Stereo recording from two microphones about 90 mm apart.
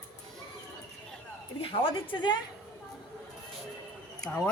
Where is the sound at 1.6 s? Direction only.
70° left (ahead or behind).